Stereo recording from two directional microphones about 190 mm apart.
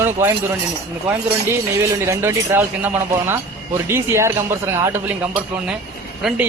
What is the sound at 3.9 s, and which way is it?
Speech, 15° right (ahead or behind).